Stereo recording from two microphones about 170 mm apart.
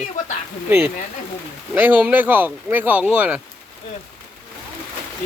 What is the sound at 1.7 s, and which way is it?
Speech, 10° right (ahead or behind).